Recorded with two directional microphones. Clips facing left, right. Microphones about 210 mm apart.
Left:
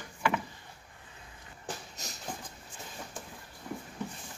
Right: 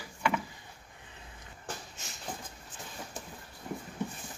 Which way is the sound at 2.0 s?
40° left (ahead or behind).